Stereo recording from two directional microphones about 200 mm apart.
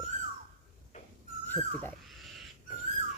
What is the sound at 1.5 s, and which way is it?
Dog, 5° left (ahead or behind).